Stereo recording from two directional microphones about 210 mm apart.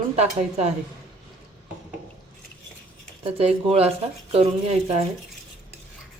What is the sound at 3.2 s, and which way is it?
Speech, 30° right (ahead or behind).